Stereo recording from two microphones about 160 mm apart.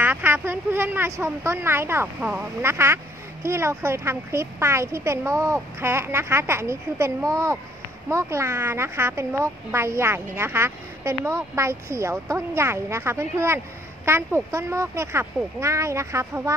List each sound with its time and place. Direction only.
0.0 s speech: 15° right (ahead or behind)